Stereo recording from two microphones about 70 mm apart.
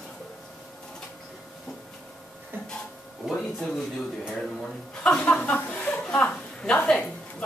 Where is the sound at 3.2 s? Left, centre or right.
Centre.